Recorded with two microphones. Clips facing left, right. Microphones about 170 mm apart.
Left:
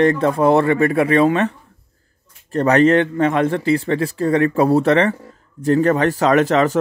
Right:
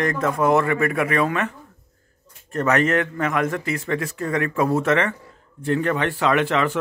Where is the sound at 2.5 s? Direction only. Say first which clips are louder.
Left 6 dB; 35° left (ahead or behind).